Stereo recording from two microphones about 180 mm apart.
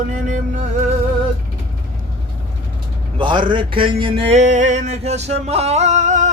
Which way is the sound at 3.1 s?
25° right (ahead or behind).